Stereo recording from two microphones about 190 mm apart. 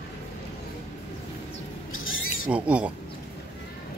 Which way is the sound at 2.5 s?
5° right (ahead or behind).